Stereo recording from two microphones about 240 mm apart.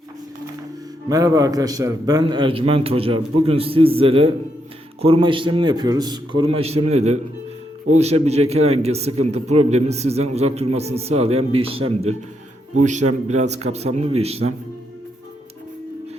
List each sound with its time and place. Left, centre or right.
1.1 s a man's voice: centre